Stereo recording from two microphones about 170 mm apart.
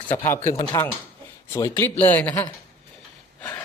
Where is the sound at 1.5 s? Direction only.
20° left (ahead or behind).